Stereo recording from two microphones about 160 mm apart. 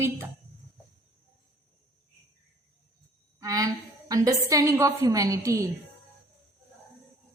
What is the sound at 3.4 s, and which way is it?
A woman's voice, 20° right (ahead or behind).